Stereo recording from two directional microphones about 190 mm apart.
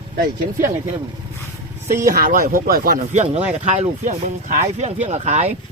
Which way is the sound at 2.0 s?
45° right (ahead or behind).